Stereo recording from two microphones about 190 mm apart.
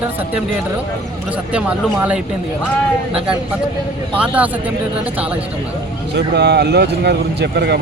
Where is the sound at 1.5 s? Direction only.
5° right (ahead or behind).